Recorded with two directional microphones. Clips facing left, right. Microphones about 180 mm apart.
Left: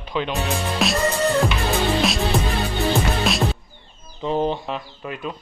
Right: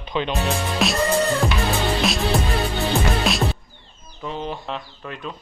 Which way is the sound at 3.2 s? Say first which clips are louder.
Even; centre (ahead or behind).